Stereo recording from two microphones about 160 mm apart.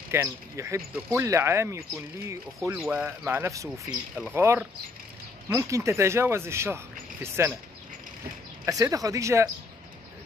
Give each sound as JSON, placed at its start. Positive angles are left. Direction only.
{"t": 0.1, "sound": "speech", "side_deg": -15}
{"t": 8.6, "sound": "speech", "side_deg": -20}